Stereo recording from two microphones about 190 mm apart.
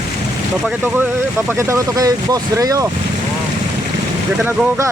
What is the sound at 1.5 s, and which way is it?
Speech, 15° right (ahead or behind).